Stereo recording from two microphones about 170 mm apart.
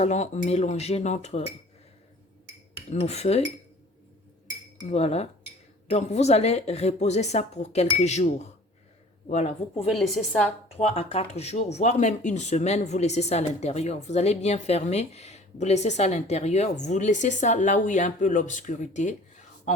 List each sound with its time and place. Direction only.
0.0 s speech: 40° left (ahead or behind)
2.9 s speech: 40° left (ahead or behind)
4.9 s speech: 40° left (ahead or behind)
9.9 s a woman's voice: centre (ahead or behind)
10.7 s speech: 35° left (ahead or behind)